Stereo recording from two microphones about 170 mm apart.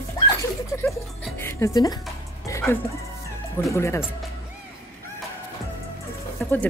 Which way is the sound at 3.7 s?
15° left (ahead or behind).